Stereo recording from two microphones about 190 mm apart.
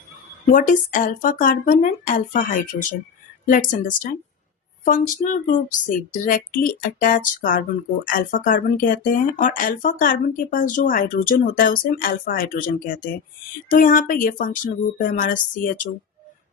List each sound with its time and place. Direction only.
0.5 s speech: 45° left (ahead or behind)